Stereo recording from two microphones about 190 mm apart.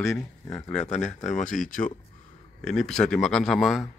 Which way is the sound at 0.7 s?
35° left (ahead or behind).